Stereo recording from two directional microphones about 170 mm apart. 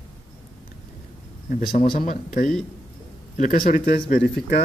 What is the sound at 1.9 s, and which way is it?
Speech, 55° left (ahead or behind).